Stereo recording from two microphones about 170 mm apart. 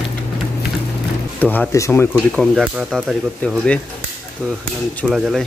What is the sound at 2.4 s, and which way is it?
Speech, centre (ahead or behind).